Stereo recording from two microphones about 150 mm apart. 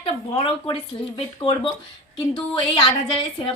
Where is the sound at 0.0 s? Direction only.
35° left (ahead or behind).